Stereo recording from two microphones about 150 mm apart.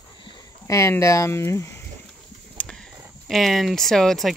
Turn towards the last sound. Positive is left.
turn(degrees=0)  # may be behind; listen again after turning